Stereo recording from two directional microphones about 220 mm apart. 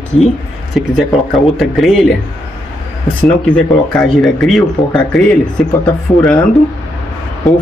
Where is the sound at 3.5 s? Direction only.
5° left (ahead or behind).